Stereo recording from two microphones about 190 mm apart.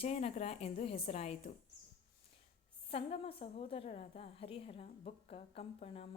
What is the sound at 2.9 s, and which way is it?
A woman's voice, 30° left (ahead or behind).